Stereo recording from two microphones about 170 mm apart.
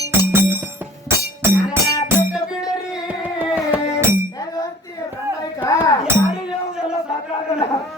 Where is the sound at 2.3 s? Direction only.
5° right (ahead or behind).